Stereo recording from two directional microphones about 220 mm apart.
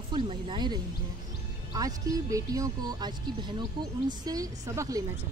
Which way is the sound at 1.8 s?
15° right (ahead or behind).